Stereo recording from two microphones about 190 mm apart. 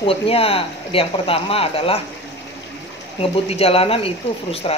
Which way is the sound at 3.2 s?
30° left (ahead or behind).